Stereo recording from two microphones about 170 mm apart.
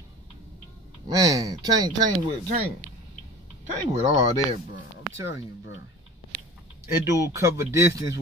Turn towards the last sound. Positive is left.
turn(degrees=-15)  # may be behind; listen again after turning